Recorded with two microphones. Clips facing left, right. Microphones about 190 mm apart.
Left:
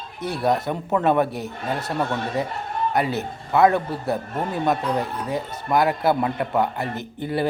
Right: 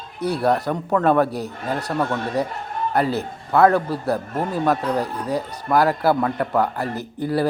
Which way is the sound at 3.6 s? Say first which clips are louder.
Right 2 dB; 20° left (ahead or behind).